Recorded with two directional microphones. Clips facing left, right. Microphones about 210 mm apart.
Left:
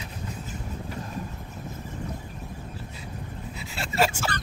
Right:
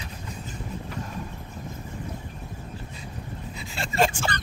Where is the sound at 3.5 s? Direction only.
5° left (ahead or behind).